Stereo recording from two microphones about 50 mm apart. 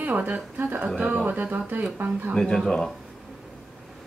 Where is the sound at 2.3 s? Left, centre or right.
Centre.